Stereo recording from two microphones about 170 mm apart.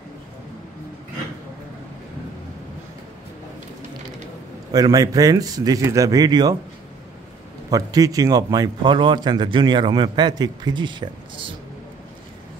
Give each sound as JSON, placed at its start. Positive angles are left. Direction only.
{"t": 4.7, "sound": "speech", "side_deg": -20}
{"t": 7.7, "sound": "speech", "side_deg": -20}